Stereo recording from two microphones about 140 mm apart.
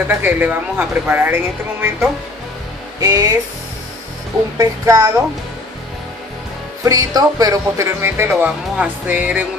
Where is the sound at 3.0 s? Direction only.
25° right (ahead or behind).